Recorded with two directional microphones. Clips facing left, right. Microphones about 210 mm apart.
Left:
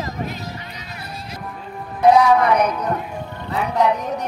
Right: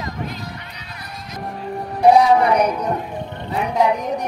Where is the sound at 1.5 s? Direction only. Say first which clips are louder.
Right 5 dB; 40° right (ahead or behind).